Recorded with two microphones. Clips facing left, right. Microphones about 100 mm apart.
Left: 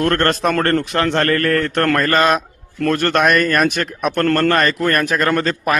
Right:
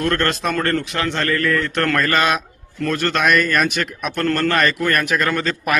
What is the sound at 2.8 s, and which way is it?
A man's voice, 50° left (ahead or behind).